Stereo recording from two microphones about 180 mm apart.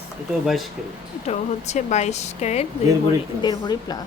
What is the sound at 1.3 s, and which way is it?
Speech, 40° left (ahead or behind).